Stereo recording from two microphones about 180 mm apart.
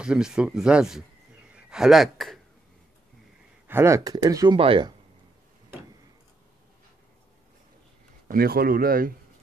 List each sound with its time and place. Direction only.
0.0 s a man's voice: 5° right (ahead or behind)
3.6 s speech: 15° right (ahead or behind)
8.3 s speech: 55° right (ahead or behind)